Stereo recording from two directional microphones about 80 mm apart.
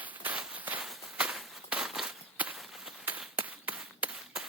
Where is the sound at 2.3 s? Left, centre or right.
Right.